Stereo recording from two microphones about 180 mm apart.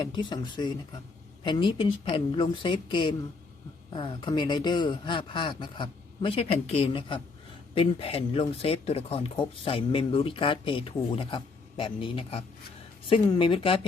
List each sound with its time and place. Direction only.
0.0 s speech: 25° left (ahead or behind)